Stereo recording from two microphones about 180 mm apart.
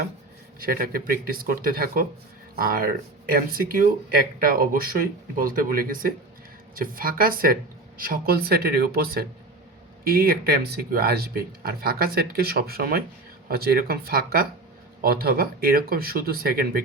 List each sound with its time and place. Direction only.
0.6 s speech: 55° right (ahead or behind)